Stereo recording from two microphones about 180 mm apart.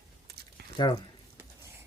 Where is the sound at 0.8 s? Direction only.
25° left (ahead or behind).